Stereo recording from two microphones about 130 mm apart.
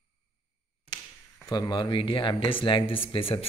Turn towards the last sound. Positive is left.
turn(degrees=45)  # may be behind; listen again after turning